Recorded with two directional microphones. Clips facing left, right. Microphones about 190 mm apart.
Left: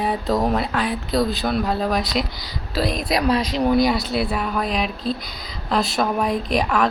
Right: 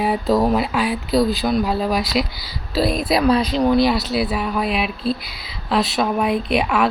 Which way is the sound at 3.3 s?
30° right (ahead or behind).